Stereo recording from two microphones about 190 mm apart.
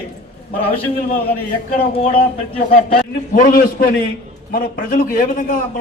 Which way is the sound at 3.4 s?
50° left (ahead or behind).